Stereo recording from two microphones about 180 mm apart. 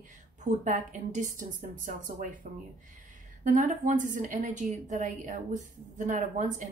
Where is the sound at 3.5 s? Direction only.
45° right (ahead or behind).